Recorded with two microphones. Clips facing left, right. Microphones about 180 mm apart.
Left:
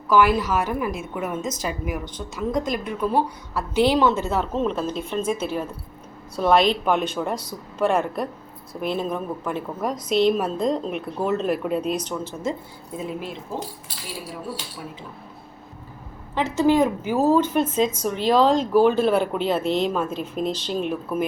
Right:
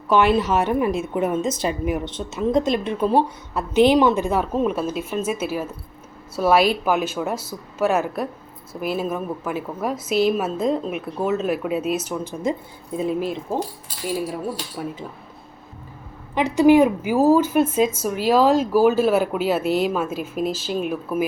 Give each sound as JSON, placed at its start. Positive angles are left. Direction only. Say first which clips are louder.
{"t": 0.1, "sound": "a woman's voice", "louder": "right 1 dB", "side_deg": -25}
{"t": 14.8, "sound": "speech", "louder": "right 7 dB", "side_deg": -55}
{"t": 16.3, "sound": "a woman's voice", "louder": "right 5 dB", "side_deg": -15}